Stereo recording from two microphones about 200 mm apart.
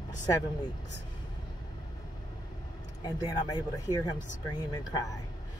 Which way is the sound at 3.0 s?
20° left (ahead or behind).